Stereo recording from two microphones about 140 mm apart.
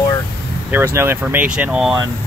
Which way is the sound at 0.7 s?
15° right (ahead or behind).